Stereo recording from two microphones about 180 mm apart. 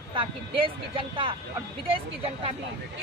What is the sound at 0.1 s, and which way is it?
Speech, 30° right (ahead or behind).